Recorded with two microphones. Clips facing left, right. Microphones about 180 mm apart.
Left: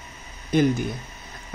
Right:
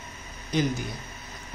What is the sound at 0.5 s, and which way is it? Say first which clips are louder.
Speech: left 6 dB; 55° left (ahead or behind).